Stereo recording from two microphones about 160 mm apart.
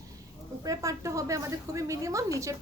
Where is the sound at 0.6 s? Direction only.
20° right (ahead or behind).